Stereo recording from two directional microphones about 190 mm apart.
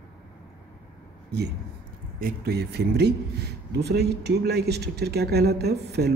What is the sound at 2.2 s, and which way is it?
Speech, 55° right (ahead or behind).